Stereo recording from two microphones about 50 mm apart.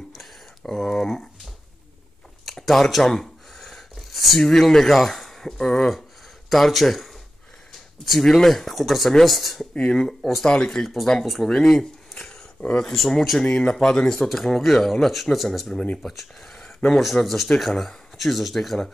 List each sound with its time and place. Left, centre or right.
0.1 s a sound: centre
0.7 s speech: centre
2.4 s a sound: centre
4.5 s speech: centre
13.4 s speech: centre
14.3 s speech: centre